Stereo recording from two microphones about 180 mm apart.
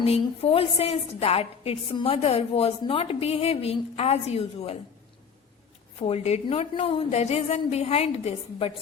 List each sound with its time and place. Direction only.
0.0 s a woman's voice: 35° left (ahead or behind)
6.0 s a woman's voice: 35° left (ahead or behind)